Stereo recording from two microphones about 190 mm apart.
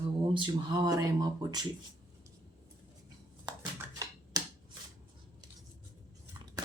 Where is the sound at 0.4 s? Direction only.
20° right (ahead or behind).